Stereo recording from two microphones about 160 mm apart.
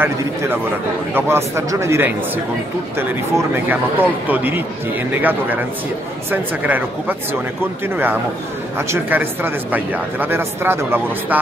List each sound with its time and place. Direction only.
0.0 s speech: 15° right (ahead or behind)